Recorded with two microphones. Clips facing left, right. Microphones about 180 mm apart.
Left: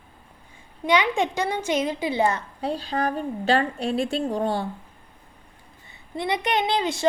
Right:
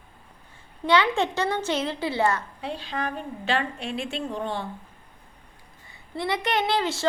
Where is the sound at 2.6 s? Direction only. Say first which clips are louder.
Left 9 dB; 40° left (ahead or behind).